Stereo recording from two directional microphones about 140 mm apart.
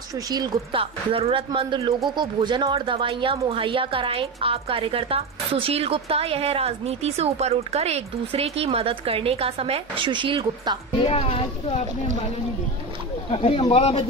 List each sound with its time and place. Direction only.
0.1 s speech: 30° right (ahead or behind)
11.1 s speech: 45° left (ahead or behind)
13.3 s speech: 40° left (ahead or behind)